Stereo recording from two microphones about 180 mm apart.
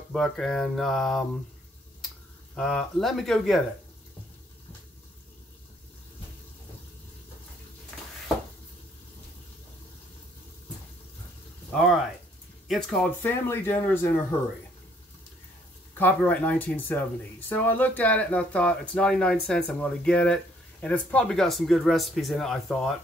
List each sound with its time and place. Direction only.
0.1 s speech: centre (ahead or behind)
2.5 s speech: 5° left (ahead or behind)
11.7 s speech: centre (ahead or behind)
16.0 s speech: 10° left (ahead or behind)